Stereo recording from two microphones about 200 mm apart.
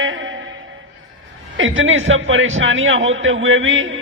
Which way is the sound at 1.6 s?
75° right (ahead or behind).